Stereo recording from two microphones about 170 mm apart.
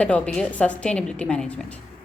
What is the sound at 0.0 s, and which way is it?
A woman's voice, 5° left (ahead or behind).